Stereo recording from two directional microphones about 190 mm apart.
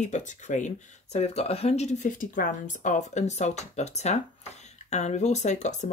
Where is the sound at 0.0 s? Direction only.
40° left (ahead or behind).